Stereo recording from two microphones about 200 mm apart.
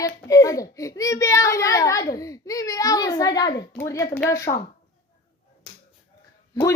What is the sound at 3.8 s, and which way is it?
Speech, 15° left (ahead or behind).